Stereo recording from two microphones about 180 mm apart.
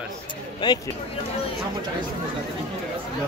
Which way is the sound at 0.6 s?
25° left (ahead or behind).